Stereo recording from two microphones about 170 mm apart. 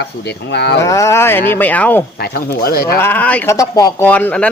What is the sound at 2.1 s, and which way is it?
Speech, 65° left (ahead or behind).